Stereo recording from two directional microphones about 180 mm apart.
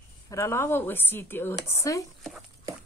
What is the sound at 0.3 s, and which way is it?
Speech, 15° left (ahead or behind).